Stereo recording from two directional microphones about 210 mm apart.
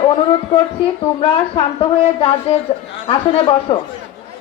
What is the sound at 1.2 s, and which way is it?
Speech, 25° left (ahead or behind).